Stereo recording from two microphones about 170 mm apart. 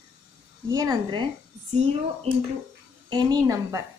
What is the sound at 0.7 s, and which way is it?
Speech, 20° right (ahead or behind).